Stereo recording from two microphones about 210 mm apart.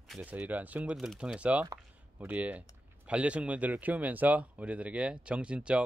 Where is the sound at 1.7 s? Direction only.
10° right (ahead or behind).